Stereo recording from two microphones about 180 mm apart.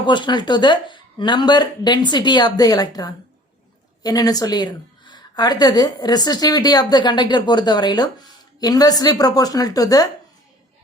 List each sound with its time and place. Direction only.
0.0 s a woman's voice: 25° left (ahead or behind)